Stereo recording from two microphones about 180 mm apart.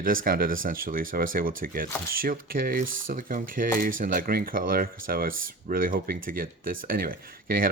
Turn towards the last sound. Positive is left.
turn(degrees=-55)  # may be behind; listen again after turning